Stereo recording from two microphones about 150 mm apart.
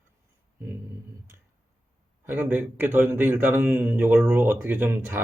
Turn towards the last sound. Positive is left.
turn(degrees=-15)  # may be behind; listen again after turning